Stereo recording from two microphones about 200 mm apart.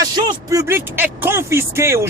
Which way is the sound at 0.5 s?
15° right (ahead or behind).